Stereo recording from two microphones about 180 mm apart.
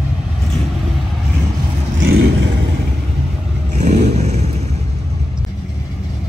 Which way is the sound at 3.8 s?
40° right (ahead or behind).